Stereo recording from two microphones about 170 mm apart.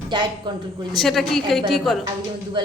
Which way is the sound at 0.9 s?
Centre (ahead or behind).